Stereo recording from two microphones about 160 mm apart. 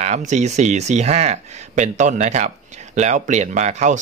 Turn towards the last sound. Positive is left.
turn(degrees=-50)  # may be behind; listen again after turning